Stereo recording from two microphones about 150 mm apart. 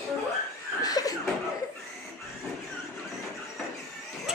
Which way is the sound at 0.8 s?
25° left (ahead or behind).